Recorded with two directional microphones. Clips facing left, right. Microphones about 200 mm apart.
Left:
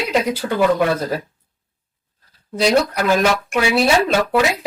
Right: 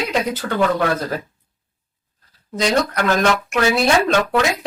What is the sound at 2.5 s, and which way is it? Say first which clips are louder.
Speech: left 3 dB; 10° left (ahead or behind).